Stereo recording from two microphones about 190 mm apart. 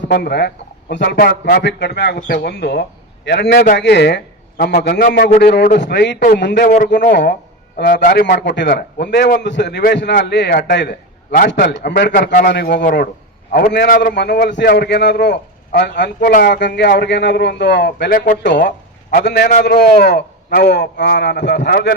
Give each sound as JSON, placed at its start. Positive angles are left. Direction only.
{"t": 0.1, "sound": "a man's voice", "side_deg": 55}
{"t": 8.0, "sound": "a man's voice", "side_deg": 45}
{"t": 8.3, "sound": "a man's voice", "side_deg": 65}
{"t": 12.8, "sound": "a man's voice", "side_deg": 45}
{"t": 13.5, "sound": "a man's voice", "side_deg": 60}